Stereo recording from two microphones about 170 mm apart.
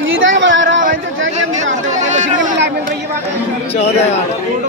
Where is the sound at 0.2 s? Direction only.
90° right.